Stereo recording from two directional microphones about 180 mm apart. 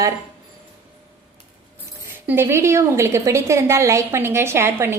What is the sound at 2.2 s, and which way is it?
A woman's voice, 15° right (ahead or behind).